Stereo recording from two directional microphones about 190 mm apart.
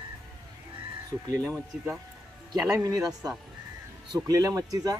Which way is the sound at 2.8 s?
20° right (ahead or behind).